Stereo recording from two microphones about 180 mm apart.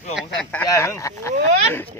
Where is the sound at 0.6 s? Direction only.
15° left (ahead or behind).